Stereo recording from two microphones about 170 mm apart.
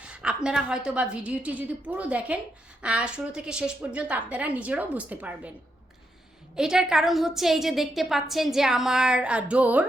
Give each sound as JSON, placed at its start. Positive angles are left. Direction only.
{"t": 0.0, "sound": "a sound", "side_deg": -5}
{"t": 0.4, "sound": "a woman's voice", "side_deg": -5}
{"t": 6.6, "sound": "a woman's voice", "side_deg": -5}